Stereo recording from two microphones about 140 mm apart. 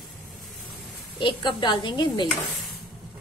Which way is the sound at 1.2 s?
35° left (ahead or behind).